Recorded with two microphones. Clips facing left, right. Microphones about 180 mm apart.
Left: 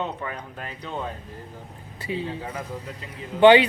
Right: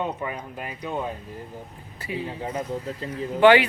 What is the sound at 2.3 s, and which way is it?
Speech, 25° right (ahead or behind).